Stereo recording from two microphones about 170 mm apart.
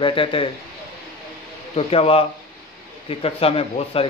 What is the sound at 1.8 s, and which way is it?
Speech, 35° left (ahead or behind).